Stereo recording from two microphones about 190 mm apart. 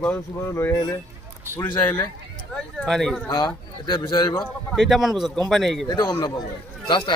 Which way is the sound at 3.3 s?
25° left (ahead or behind).